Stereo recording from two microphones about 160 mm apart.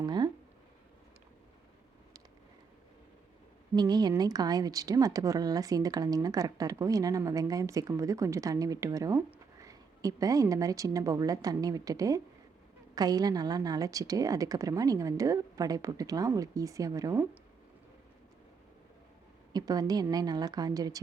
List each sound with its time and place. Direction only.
0.0 s a sound: 25° right (ahead or behind)
3.8 s speech: 25° right (ahead or behind)
19.5 s speech: 25° right (ahead or behind)